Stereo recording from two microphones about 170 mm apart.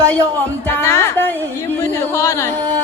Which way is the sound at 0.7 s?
15° left (ahead or behind).